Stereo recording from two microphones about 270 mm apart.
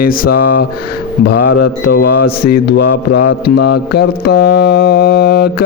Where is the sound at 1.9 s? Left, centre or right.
Left.